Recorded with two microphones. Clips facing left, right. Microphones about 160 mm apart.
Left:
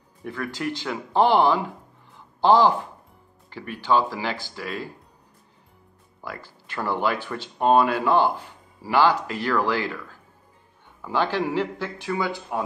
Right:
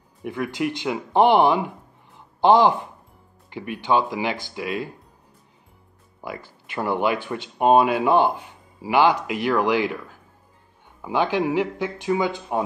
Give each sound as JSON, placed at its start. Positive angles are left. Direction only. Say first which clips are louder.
{"t": 0.2, "sound": "speech", "louder": "right 4 dB", "side_deg": -15}
{"t": 6.7, "sound": "speech", "louder": "right 2 dB", "side_deg": -20}
{"t": 11.0, "sound": "speech", "louder": "right 2 dB", "side_deg": -15}